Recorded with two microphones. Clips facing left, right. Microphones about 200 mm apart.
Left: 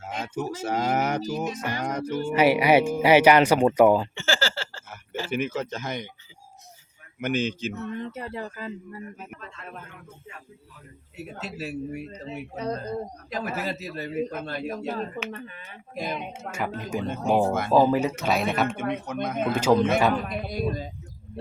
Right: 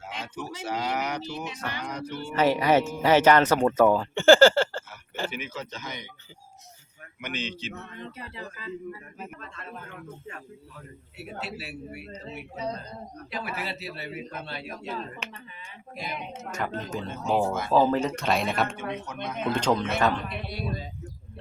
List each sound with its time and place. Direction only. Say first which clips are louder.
0.0 s a man's voice: left 6 dB; 45° left (ahead or behind)
2.3 s speech: left 3 dB; 10° left (ahead or behind)
4.1 s speech: right 12 dB; 55° right (ahead or behind)
5.3 s a man's voice: left 9 dB; 50° left (ahead or behind)
7.2 s a man's voice: left 8 dB; 45° left (ahead or behind)
11.2 s speech: left 2 dB; 40° left (ahead or behind)
13.3 s a man's voice: left 4 dB; 45° left (ahead or behind)
16.5 s speech: left 2 dB; 10° left (ahead or behind)
17.4 s speech: left 3 dB; 55° left (ahead or behind)
17.7 s speech: left 2 dB; 15° left (ahead or behind)
18.8 s a man's voice: left 5 dB; 55° left (ahead or behind)
19.5 s speech: left 5 dB; 10° left (ahead or behind)
20.2 s a man's voice: left 5 dB; 45° left (ahead or behind)